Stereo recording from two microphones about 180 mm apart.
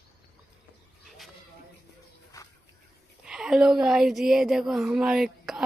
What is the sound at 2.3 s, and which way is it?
Bird, 20° left (ahead or behind).